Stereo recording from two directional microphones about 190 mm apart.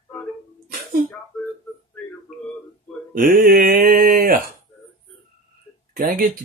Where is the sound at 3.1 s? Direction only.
50° right (ahead or behind).